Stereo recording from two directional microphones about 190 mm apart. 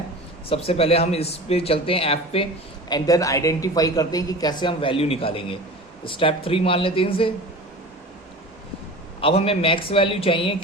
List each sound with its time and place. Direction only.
0.4 s speech: 30° left (ahead or behind)
2.9 s speech: 20° left (ahead or behind)
9.2 s speech: 30° left (ahead or behind)